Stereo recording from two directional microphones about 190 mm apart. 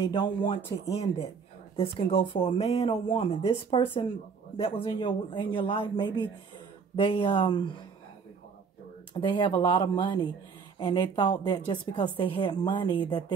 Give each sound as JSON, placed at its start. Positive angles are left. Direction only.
{"t": 0.0, "sound": "a woman's voice", "side_deg": 25}
{"t": 1.8, "sound": "a woman's voice", "side_deg": 30}
{"t": 9.1, "sound": "a woman's voice", "side_deg": 25}